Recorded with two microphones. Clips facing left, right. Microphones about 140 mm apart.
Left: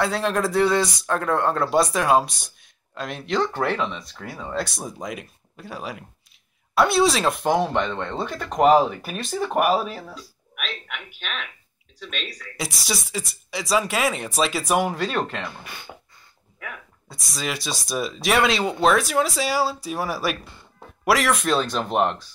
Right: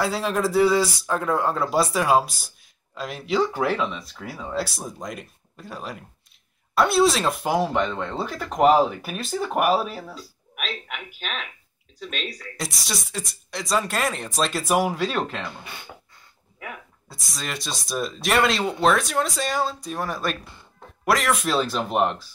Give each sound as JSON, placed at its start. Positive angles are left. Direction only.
{"t": 0.0, "sound": "speech", "side_deg": 0}
{"t": 10.9, "sound": "speech", "side_deg": -35}
{"t": 12.5, "sound": "speech", "side_deg": 0}
{"t": 16.5, "sound": "a sound", "side_deg": -25}
{"t": 17.1, "sound": "speech", "side_deg": 0}